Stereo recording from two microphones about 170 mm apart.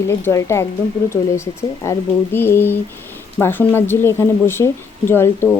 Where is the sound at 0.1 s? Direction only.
15° left (ahead or behind).